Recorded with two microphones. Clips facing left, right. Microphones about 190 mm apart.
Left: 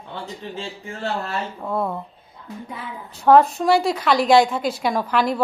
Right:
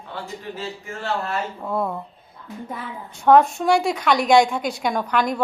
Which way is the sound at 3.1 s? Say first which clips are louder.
Left 1 dB; centre (ahead or behind).